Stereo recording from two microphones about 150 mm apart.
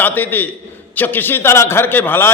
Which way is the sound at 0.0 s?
15° left (ahead or behind).